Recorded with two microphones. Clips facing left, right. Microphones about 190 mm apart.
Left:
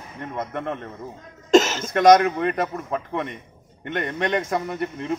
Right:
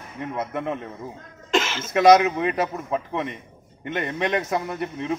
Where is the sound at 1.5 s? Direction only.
40° left (ahead or behind).